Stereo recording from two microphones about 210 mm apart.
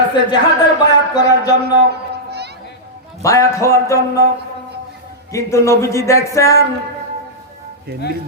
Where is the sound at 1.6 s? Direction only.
50° right (ahead or behind).